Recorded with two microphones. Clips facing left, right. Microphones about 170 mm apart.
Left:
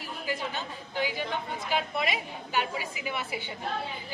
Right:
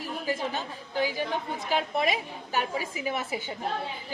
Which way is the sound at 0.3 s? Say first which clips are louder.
Right 2 dB; 40° right (ahead or behind).